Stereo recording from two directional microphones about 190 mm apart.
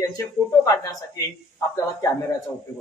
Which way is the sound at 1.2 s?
15° left (ahead or behind).